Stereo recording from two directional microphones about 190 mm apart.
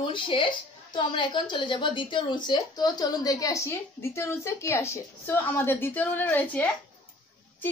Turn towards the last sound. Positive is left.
turn(degrees=10)  # may be behind; listen again after turning